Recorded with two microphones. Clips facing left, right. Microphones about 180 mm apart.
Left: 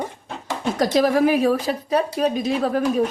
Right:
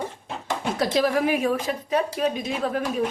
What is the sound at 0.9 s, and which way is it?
Speech, 40° left (ahead or behind).